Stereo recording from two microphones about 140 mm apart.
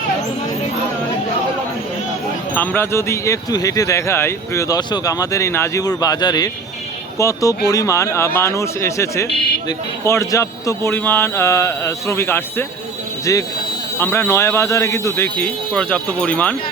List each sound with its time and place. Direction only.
2.6 s speech: 15° left (ahead or behind)